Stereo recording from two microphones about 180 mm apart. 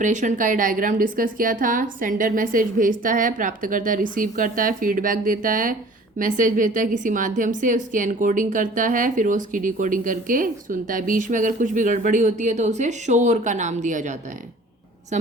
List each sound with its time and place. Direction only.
0.0 s a woman's voice: 45° right (ahead or behind)